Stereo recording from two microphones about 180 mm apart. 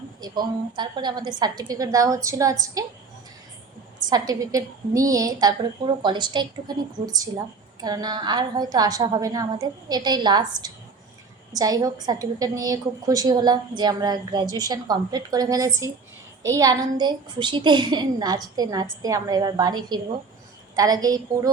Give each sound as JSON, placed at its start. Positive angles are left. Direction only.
{"t": 0.2, "sound": "a woman's voice", "side_deg": -25}
{"t": 4.1, "sound": "a woman's voice", "side_deg": -20}